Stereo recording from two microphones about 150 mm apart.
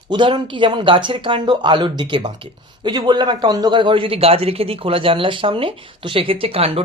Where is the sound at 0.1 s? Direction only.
30° right (ahead or behind).